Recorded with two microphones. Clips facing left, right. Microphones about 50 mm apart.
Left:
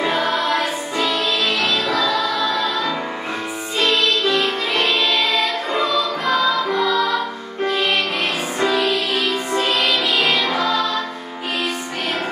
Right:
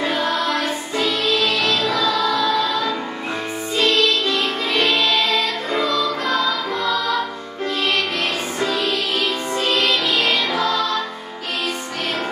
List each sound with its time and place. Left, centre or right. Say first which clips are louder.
0.0 s music: left 1 dB; centre
8.5 s music: left 4 dB; centre